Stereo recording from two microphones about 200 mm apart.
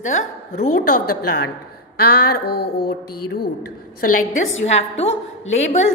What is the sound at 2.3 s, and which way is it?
Speech, 55° left (ahead or behind).